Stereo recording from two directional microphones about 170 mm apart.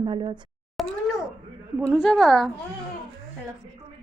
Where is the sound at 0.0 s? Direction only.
30° right (ahead or behind).